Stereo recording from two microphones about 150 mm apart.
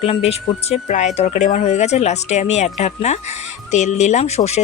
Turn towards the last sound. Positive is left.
turn(degrees=45)  # may be behind; listen again after turning